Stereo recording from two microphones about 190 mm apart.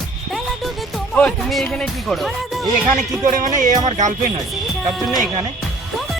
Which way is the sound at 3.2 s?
40° right (ahead or behind).